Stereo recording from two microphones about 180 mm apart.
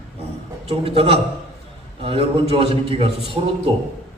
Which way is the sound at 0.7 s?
30° right (ahead or behind).